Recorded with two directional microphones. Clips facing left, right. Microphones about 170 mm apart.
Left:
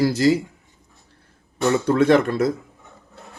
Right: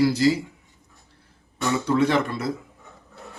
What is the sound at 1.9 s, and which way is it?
Speech, 50° left (ahead or behind).